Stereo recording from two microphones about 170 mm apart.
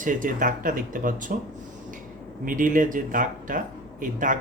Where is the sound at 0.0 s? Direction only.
50° right (ahead or behind).